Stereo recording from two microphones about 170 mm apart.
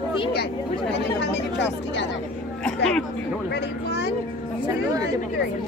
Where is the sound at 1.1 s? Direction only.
90° left.